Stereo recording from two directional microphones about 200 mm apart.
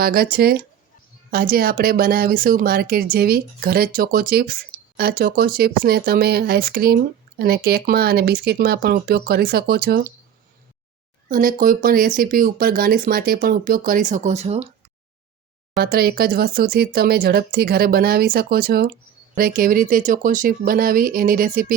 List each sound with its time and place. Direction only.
0.0 s speech: 50° right (ahead or behind)
11.3 s speech: 45° right (ahead or behind)
15.8 s speech: 50° right (ahead or behind)